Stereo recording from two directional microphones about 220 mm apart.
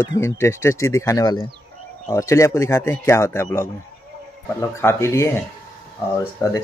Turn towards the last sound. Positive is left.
turn(degrees=15)  # may be behind; listen again after turning